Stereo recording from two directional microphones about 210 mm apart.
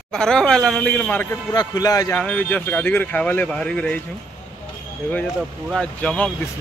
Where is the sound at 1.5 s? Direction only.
20° left (ahead or behind).